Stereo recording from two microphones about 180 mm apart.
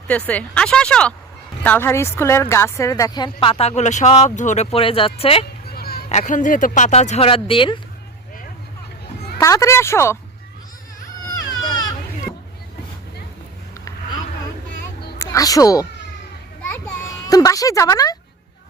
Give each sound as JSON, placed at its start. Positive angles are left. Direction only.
{"t": 0.3, "sound": "a woman's voice", "side_deg": 5}
{"t": 5.7, "sound": "a sound", "side_deg": 60}
{"t": 6.1, "sound": "speech", "side_deg": 40}
{"t": 9.4, "sound": "speech", "side_deg": 15}
{"t": 15.2, "sound": "speech", "side_deg": 20}
{"t": 16.7, "sound": "children playing", "side_deg": 15}